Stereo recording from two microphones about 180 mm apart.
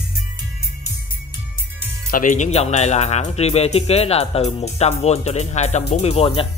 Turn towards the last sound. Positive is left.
turn(degrees=35)  # may be behind; listen again after turning